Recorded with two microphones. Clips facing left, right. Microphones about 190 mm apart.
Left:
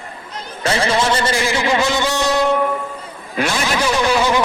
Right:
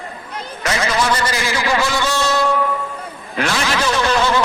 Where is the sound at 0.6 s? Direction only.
30° left (ahead or behind).